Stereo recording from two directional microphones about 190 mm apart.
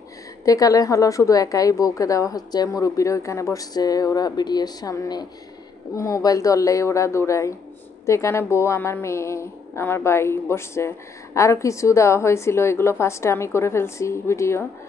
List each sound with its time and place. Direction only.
0.5 s a woman's voice: 20° left (ahead or behind)